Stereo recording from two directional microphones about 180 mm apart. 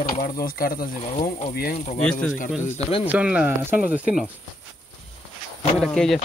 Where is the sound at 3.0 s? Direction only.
5° right (ahead or behind).